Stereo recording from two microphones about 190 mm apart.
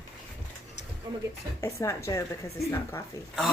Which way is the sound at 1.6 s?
15° left (ahead or behind).